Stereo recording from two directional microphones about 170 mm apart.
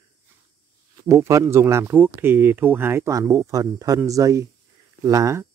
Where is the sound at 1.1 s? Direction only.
20° right (ahead or behind).